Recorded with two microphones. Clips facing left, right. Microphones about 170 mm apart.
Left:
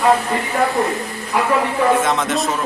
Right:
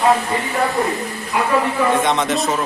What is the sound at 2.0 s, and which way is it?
Speech, centre (ahead or behind).